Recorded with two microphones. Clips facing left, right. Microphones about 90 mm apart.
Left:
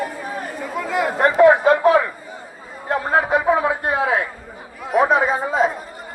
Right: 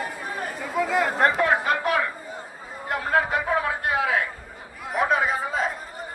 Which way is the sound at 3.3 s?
25° left (ahead or behind).